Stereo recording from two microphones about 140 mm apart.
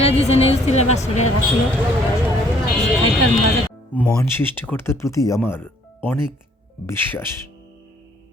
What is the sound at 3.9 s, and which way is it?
Speech, 10° left (ahead or behind).